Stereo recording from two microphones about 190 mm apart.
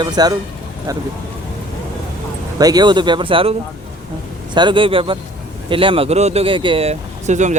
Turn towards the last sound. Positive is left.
turn(degrees=-40)  # may be behind; listen again after turning